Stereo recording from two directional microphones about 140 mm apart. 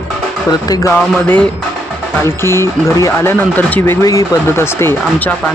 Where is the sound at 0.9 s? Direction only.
15° left (ahead or behind).